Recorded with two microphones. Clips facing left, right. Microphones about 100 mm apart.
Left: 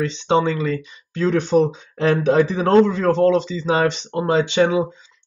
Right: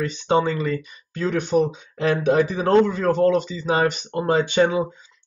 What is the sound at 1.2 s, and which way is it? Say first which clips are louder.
Speech: left 3 dB; 35° left (ahead or behind).